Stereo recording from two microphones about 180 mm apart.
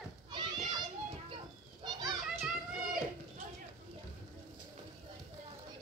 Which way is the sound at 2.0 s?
Centre (ahead or behind).